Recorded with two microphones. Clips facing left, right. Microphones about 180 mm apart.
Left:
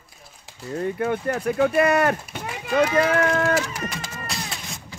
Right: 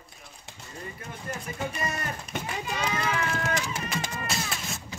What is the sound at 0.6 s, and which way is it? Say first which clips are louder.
Speech: left 17 dB; 65° left (ahead or behind).